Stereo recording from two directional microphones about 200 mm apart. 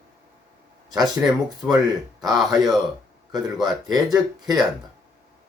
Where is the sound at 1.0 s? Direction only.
Centre (ahead or behind).